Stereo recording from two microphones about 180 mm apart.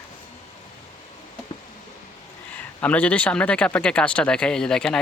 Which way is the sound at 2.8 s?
10° left (ahead or behind).